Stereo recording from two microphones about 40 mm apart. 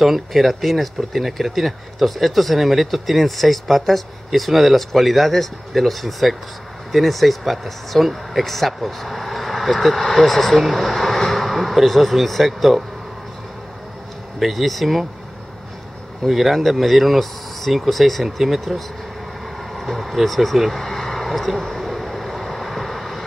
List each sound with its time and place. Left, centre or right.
0.0 s speech: centre
14.4 s speech: centre
16.3 s speech: centre
20.7 s vehicle: centre